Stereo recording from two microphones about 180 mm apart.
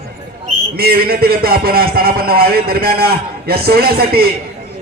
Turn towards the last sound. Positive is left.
turn(degrees=-60)  # may be behind; listen again after turning